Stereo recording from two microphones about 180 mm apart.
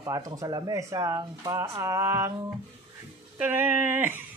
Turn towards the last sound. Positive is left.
turn(degrees=-10)  # may be behind; listen again after turning